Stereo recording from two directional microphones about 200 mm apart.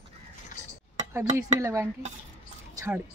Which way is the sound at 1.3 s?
15° right (ahead or behind).